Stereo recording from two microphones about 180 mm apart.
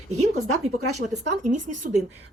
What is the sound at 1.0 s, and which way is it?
Speech, 45° right (ahead or behind).